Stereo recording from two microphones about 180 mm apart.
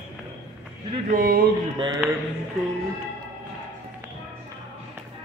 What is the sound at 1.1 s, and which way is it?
Speech, 55° right (ahead or behind).